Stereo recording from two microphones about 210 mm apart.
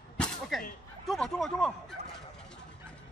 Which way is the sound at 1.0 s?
Centre (ahead or behind).